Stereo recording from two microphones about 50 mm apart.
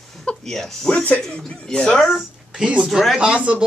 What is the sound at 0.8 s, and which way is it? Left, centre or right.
Speech, left.